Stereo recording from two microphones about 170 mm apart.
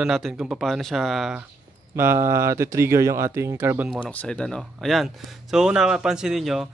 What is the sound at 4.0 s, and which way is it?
Speech, 10° left (ahead or behind).